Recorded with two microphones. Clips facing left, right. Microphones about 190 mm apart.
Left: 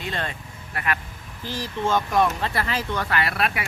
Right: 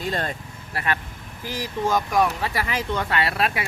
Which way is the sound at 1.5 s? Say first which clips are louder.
Right 1 dB; 10° right (ahead or behind).